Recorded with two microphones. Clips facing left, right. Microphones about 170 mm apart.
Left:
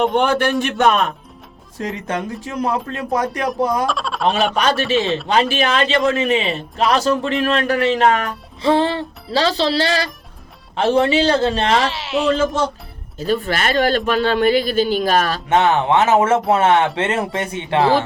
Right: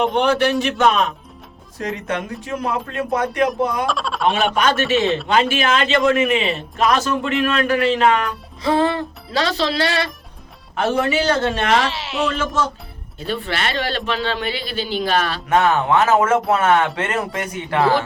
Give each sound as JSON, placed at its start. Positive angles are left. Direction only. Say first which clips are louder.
{"t": 0.0, "sound": "a man's voice", "louder": "left 1 dB", "side_deg": 50}
{"t": 1.8, "sound": "a man's voice", "louder": "left 1 dB", "side_deg": 35}
{"t": 3.8, "sound": "speech", "louder": "even", "side_deg": 0}
{"t": 4.5, "sound": "a man's voice", "louder": "even", "side_deg": 35}
{"t": 8.7, "sound": "a man's voice", "louder": "even", "side_deg": 30}
{"t": 11.8, "sound": "a woman's voice", "louder": "left 2 dB", "side_deg": 0}
{"t": 13.1, "sound": "a man's voice", "louder": "left 5 dB", "side_deg": 40}
{"t": 15.4, "sound": "speech", "louder": "even", "side_deg": 25}